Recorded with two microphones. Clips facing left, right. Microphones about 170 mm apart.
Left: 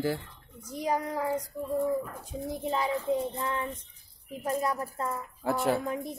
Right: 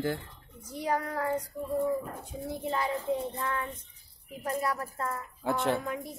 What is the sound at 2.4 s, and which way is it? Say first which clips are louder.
A woman's voice: left 2 dB; 15° left (ahead or behind).